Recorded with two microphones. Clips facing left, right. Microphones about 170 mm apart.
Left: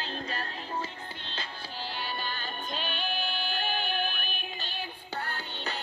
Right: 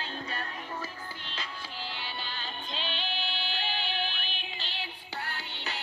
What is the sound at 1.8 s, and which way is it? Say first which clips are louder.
Music: left 6 dB; 45° left (ahead or behind).